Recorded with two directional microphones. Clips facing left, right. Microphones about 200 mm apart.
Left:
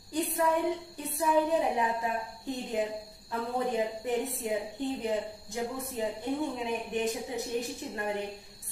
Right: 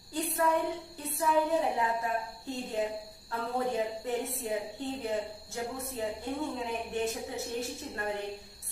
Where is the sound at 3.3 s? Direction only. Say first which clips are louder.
Left 1 dB; 15° left (ahead or behind).